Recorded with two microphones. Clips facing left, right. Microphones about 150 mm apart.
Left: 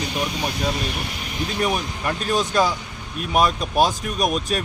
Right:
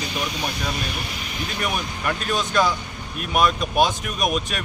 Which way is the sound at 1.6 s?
30° left (ahead or behind).